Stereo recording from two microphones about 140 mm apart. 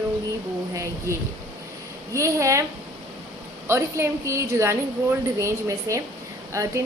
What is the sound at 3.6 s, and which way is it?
A woman's voice, 20° right (ahead or behind).